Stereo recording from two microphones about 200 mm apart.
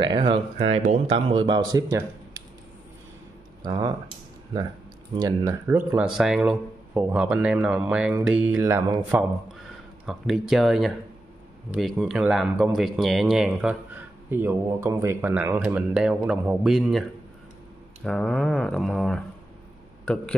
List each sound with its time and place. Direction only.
0.0 s speech: 25° right (ahead or behind)
3.6 s speech: 20° right (ahead or behind)
5.1 s speech: 15° right (ahead or behind)
10.0 s speech: centre (ahead or behind)
18.0 s speech: 5° left (ahead or behind)